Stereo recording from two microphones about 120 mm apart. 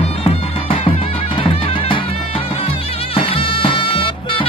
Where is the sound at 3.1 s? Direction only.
50° left (ahead or behind).